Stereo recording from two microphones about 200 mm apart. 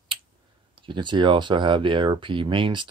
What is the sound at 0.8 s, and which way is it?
Speech, 25° right (ahead or behind).